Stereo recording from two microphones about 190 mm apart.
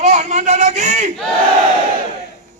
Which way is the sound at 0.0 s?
40° right (ahead or behind).